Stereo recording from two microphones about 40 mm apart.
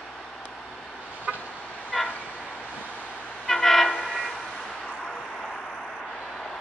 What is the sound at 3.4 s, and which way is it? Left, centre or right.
Train, centre.